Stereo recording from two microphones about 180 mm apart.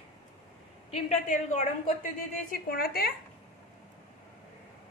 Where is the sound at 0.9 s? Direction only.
35° left (ahead or behind).